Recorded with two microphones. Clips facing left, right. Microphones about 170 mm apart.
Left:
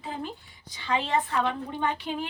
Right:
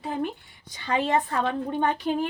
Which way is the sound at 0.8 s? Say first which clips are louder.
Right 3 dB; 45° right (ahead or behind).